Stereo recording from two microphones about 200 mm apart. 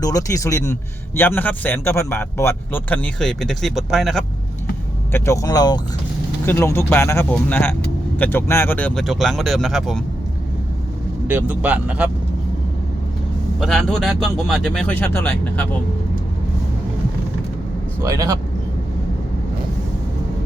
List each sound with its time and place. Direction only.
0.0 s a man's voice: 15° left (ahead or behind); by 4.3 s centre (ahead or behind)
5.1 s a man's voice: 15° left (ahead or behind)
11.3 s speech: 5° right (ahead or behind)
13.6 s speech: centre (ahead or behind)
18.0 s speech: 15° right (ahead or behind)